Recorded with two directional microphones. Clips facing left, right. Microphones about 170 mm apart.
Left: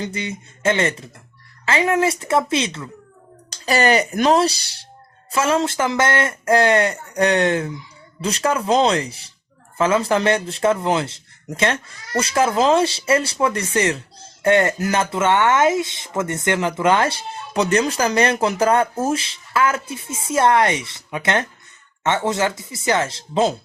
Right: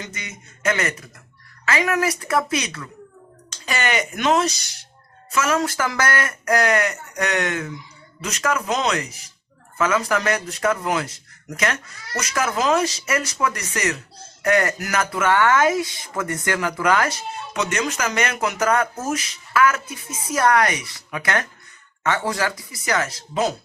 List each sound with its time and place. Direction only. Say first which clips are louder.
0.0 s speech: left 9 dB; 30° left (ahead or behind)